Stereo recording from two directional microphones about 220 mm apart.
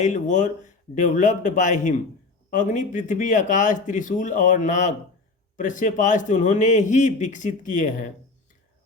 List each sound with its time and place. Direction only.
0.0 s a man's voice: 35° left (ahead or behind)